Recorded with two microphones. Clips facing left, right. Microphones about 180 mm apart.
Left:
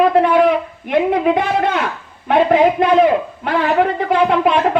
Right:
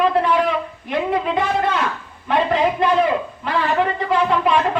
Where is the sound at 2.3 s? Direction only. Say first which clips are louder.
Left 6 dB; 60° left (ahead or behind).